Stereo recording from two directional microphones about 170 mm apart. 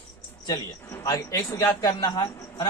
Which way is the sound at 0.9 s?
20° left (ahead or behind).